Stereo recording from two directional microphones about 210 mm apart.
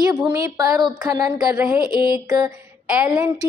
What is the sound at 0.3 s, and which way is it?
A woman's voice, 15° right (ahead or behind).